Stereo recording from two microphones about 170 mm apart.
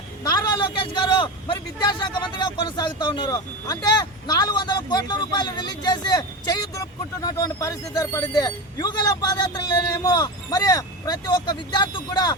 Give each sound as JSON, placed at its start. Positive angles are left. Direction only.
{"t": 0.3, "sound": "a man's voice", "side_deg": 25}